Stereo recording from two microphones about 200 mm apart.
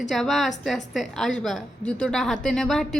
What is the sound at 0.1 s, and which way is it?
A woman's voice, centre (ahead or behind).